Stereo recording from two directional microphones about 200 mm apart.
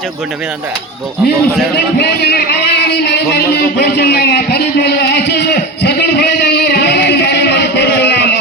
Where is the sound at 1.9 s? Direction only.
55° left (ahead or behind).